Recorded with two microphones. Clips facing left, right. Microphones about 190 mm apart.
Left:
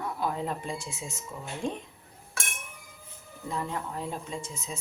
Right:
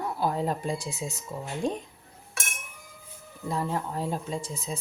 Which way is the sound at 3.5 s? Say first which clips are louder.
Right 4 dB; 35° right (ahead or behind).